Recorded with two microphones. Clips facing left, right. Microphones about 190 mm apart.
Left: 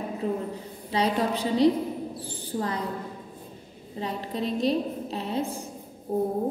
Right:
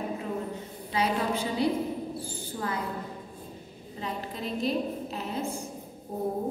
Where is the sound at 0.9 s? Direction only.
35° left (ahead or behind).